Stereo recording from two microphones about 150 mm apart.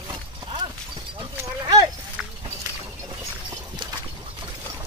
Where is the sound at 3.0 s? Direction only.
25° right (ahead or behind).